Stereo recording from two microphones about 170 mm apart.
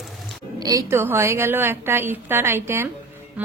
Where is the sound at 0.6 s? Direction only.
20° right (ahead or behind).